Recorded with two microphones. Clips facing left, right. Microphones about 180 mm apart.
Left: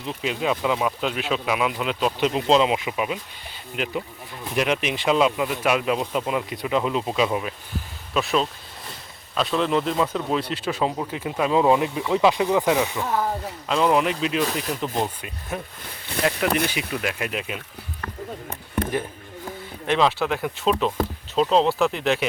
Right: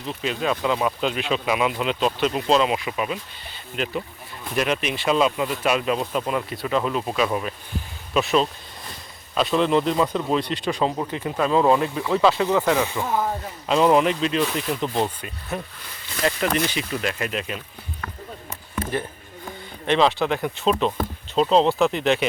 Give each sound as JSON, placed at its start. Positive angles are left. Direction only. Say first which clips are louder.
{"t": 0.0, "sound": "speech", "louder": "even", "side_deg": 15}
{"t": 0.5, "sound": "speech", "louder": "even", "side_deg": 5}
{"t": 2.2, "sound": "speech", "louder": "left 2 dB", "side_deg": 20}
{"t": 7.3, "sound": "speech", "louder": "even", "side_deg": 5}
{"t": 13.0, "sound": "speech", "louder": "even", "side_deg": 0}
{"t": 19.5, "sound": "speech", "louder": "right 2 dB", "side_deg": 5}